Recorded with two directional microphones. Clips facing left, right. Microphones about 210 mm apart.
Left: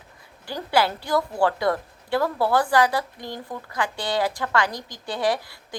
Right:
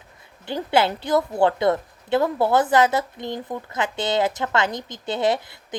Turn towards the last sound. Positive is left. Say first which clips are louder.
# right 3 dB
turn(degrees=-25)  # may be behind; listen again after turning